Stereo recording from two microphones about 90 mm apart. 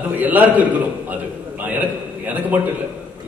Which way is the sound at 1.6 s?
20° right (ahead or behind).